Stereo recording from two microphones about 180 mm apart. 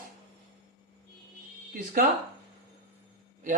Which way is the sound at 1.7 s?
50° right (ahead or behind).